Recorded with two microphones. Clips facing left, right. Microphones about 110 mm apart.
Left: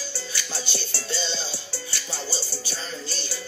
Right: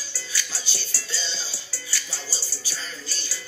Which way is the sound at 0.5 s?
25° left (ahead or behind).